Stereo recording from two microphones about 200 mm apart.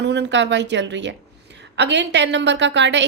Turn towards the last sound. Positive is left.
turn(degrees=-65)  # may be behind; listen again after turning